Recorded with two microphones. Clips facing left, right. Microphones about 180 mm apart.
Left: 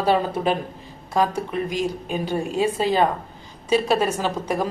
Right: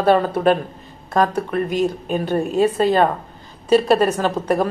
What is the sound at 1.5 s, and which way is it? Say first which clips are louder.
A woman's voice: right 5 dB; 60° right (ahead or behind).